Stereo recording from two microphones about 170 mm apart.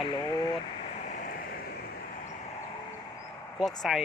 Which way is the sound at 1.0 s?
50° left (ahead or behind).